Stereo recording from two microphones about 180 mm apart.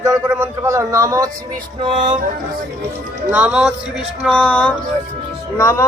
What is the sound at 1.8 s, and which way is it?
Music, 30° right (ahead or behind).